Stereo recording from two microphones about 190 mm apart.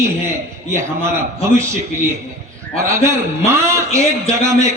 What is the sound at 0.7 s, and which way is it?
Speech, 15° right (ahead or behind).